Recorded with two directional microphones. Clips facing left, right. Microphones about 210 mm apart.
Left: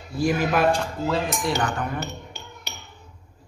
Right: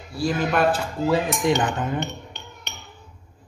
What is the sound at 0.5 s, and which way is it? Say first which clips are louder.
A man's voice: even; centre (ahead or behind).